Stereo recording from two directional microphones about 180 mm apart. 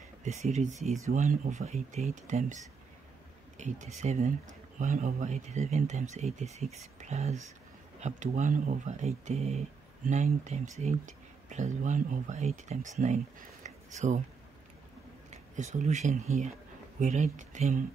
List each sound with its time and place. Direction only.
0.2 s speech: 40° right (ahead or behind)
15.5 s speech: 40° right (ahead or behind)